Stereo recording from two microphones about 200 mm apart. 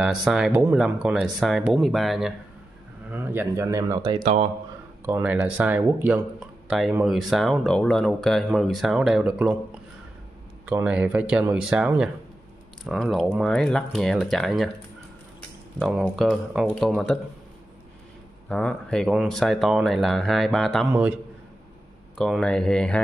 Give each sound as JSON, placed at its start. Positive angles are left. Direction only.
{"t": 0.0, "sound": "speech", "side_deg": 0}
{"t": 5.0, "sound": "speech", "side_deg": -10}
{"t": 10.6, "sound": "speech", "side_deg": -5}
{"t": 15.8, "sound": "speech", "side_deg": 0}
{"t": 18.5, "sound": "speech", "side_deg": 5}
{"t": 22.2, "sound": "speech", "side_deg": 5}